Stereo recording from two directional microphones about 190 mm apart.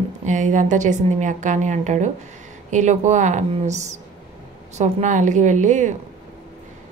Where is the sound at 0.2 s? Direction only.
40° right (ahead or behind).